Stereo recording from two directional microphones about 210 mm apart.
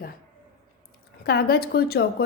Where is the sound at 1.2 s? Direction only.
50° left (ahead or behind).